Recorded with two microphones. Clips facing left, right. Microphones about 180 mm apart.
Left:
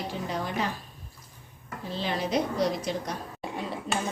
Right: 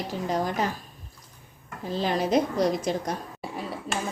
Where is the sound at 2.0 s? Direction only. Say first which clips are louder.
Right 4 dB; 45° right (ahead or behind).